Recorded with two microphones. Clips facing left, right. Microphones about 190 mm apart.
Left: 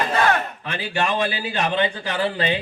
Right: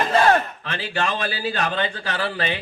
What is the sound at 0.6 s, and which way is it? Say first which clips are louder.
A man's voice: left 1 dB; 15° left (ahead or behind).